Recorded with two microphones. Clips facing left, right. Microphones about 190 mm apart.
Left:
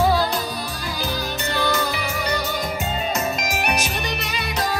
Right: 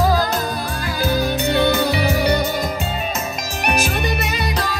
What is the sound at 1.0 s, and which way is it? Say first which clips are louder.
Music: right 9 dB; 60° right (ahead or behind).